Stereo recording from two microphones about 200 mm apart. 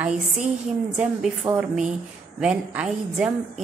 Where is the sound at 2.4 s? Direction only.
5° right (ahead or behind).